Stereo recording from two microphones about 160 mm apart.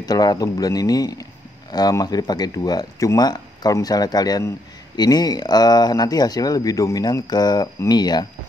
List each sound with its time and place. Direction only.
0.0 s speech: 25° left (ahead or behind)